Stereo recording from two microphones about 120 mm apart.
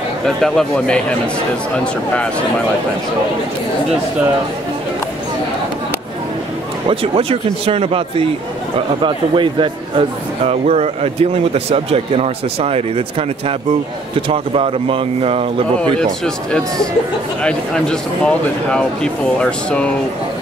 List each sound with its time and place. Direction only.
0.2 s a man's voice: 5° left (ahead or behind)
6.9 s speech: 50° right (ahead or behind)
9.0 s a man's voice: 45° right (ahead or behind)
14.3 s speech: 50° right (ahead or behind)
17.4 s speech: 5° left (ahead or behind)